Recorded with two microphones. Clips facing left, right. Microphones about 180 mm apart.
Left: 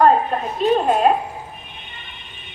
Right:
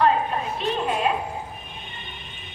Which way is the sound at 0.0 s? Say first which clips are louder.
Left 5 dB; 45° left (ahead or behind).